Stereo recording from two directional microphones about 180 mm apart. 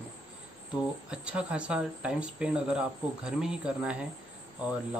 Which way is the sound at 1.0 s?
5° right (ahead or behind).